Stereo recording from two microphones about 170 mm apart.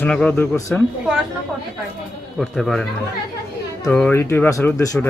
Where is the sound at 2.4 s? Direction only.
Centre (ahead or behind).